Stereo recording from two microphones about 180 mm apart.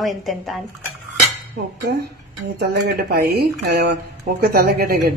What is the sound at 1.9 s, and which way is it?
Speech, 65° right (ahead or behind).